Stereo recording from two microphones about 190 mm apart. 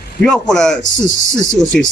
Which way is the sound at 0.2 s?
5° left (ahead or behind).